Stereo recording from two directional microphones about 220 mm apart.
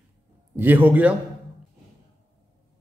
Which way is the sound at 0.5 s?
10° right (ahead or behind).